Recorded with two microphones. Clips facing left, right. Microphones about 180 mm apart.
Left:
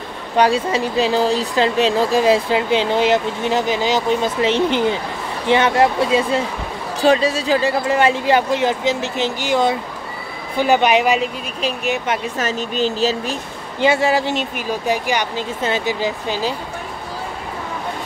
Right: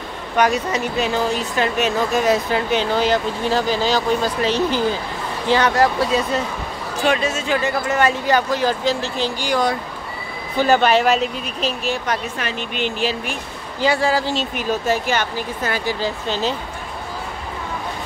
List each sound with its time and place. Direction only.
0.4 s speech: 30° left (ahead or behind)
12.4 s speech: 40° left (ahead or behind)
13.7 s speech: 25° left (ahead or behind)